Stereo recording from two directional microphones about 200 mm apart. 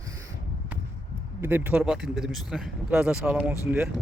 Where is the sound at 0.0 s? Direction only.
15° right (ahead or behind).